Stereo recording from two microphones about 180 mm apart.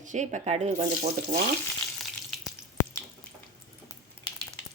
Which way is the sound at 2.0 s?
Centre (ahead or behind).